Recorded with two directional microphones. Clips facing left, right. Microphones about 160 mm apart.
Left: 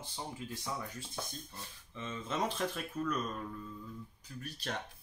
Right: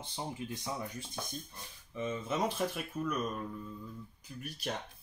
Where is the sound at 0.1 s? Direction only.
20° right (ahead or behind).